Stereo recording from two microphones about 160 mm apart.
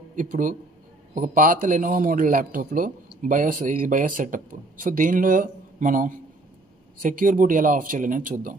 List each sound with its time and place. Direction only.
0.1 s speech: 55° right (ahead or behind)